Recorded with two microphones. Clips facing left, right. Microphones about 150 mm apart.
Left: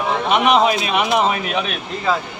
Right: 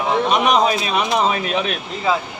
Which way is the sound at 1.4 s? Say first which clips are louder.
Right 1 dB; 35° right (ahead or behind).